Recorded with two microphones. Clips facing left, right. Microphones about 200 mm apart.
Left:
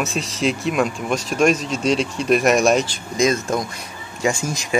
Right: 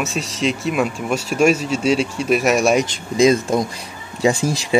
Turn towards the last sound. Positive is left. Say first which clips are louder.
# right 4 dB
turn(degrees=-35)  # may be behind; listen again after turning